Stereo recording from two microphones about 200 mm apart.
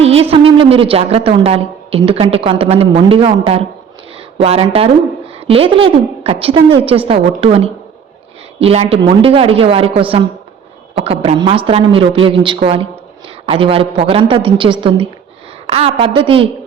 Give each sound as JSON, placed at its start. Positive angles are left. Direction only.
{"t": 0.0, "sound": "speech", "side_deg": -30}